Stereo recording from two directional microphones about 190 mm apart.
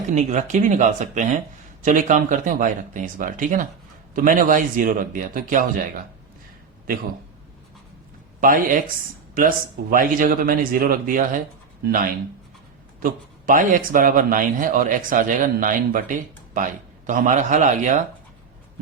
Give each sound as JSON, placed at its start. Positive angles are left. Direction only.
{"t": 0.1, "sound": "speech", "side_deg": -40}
{"t": 8.4, "sound": "speech", "side_deg": -45}
{"t": 13.0, "sound": "speech", "side_deg": -45}